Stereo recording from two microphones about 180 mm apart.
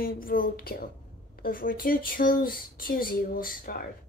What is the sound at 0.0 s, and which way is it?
Speech, 55° left (ahead or behind).